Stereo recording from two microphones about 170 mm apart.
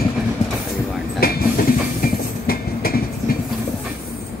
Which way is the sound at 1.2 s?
60° left (ahead or behind).